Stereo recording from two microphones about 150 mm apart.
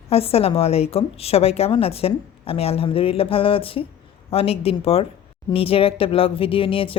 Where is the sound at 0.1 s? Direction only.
40° left (ahead or behind).